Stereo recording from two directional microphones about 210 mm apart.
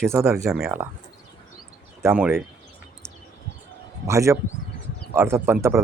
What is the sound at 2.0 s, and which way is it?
Speech, 10° right (ahead or behind).